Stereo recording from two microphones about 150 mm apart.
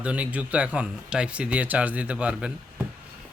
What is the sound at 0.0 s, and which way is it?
Speech, 10° right (ahead or behind).